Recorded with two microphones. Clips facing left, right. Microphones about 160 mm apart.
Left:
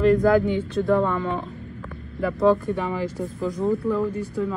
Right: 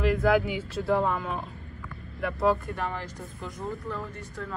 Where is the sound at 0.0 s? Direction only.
5° right (ahead or behind).